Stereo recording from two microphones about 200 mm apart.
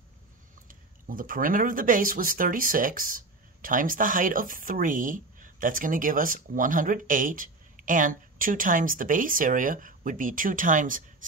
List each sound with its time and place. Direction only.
0.7 s speech: 45° right (ahead or behind)